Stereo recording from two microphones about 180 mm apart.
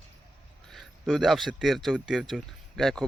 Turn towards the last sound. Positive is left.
turn(degrees=0)  # may be behind; listen again after turning